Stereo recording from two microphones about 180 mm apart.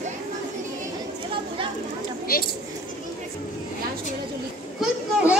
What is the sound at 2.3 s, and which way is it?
Speech, 55° left (ahead or behind).